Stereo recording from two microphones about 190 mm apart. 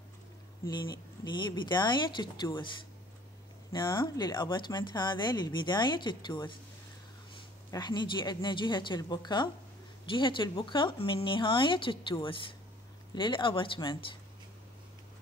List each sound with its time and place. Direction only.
0.7 s speech: 25° left (ahead or behind)
3.7 s speech: 25° left (ahead or behind)